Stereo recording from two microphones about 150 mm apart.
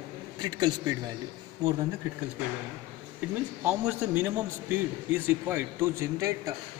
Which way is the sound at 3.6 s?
10° right (ahead or behind).